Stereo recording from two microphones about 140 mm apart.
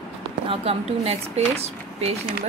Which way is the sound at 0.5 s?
45° right (ahead or behind).